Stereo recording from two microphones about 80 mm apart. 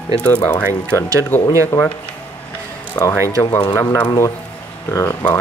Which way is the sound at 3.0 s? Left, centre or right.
Left.